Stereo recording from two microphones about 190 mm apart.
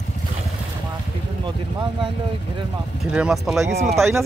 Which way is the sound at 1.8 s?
25° right (ahead or behind).